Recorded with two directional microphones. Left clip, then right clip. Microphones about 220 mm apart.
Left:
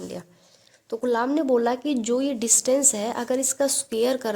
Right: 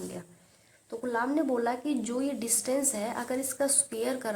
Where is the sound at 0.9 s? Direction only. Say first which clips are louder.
Left 7 dB; 40° left (ahead or behind).